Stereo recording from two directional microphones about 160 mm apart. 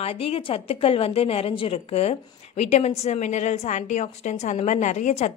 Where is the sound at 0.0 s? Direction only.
40° left (ahead or behind).